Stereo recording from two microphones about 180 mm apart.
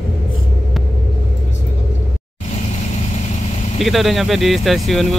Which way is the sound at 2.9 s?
40° left (ahead or behind).